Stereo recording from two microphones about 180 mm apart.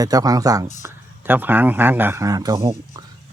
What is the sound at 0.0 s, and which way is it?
Speech, 20° right (ahead or behind).